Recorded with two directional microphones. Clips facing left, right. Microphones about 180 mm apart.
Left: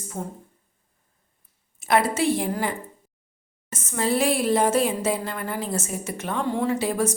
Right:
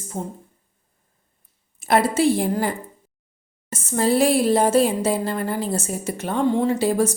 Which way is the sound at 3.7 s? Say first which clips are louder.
Right 4 dB; 30° right (ahead or behind).